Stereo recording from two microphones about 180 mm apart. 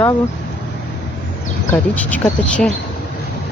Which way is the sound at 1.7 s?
10° left (ahead or behind).